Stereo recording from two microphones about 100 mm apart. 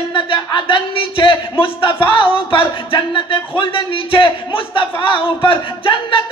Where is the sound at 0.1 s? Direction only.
50° left (ahead or behind).